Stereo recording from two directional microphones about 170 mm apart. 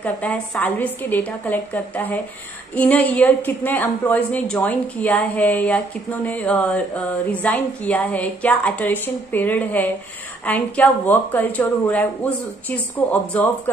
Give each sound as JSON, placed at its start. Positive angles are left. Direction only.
{"t": 0.0, "sound": "speech", "side_deg": 10}